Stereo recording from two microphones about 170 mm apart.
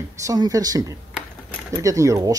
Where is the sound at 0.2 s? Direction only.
20° right (ahead or behind).